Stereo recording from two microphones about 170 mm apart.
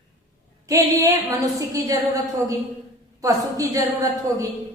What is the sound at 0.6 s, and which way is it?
A woman's voice, 20° right (ahead or behind).